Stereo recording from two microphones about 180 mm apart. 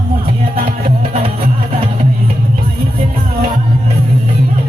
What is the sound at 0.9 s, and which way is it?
Music, 35° right (ahead or behind).